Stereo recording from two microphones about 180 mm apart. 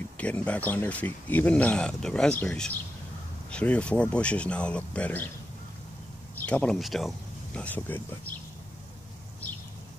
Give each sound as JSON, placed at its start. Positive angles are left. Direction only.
{"t": 0.2, "sound": "speech", "side_deg": 5}
{"t": 6.4, "sound": "speech", "side_deg": 5}